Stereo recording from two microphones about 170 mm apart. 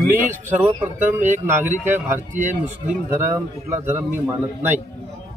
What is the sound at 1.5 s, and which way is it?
Speech, 10° right (ahead or behind).